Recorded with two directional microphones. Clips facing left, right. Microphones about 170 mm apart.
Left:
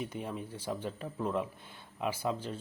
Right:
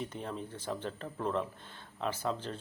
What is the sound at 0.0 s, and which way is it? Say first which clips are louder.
Speech: left 1 dB; 10° left (ahead or behind).